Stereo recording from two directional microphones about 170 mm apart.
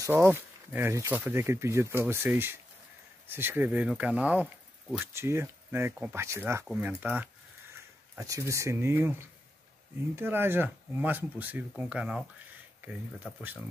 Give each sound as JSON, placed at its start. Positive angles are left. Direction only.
{"t": 0.0, "sound": "speech", "side_deg": -15}